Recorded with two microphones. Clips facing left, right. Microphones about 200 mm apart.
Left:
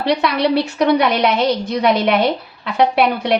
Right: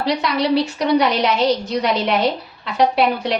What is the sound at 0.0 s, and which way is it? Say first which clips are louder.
A woman's voice: left 3 dB; 60° left (ahead or behind).